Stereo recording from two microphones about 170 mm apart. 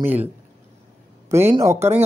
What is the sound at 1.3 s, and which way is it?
Speech, 15° right (ahead or behind).